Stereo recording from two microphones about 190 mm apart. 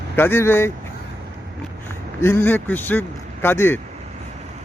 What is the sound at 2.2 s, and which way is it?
A man's voice, 15° left (ahead or behind).